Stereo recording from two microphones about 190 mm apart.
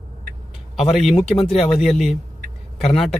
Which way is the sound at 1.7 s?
Centre (ahead or behind).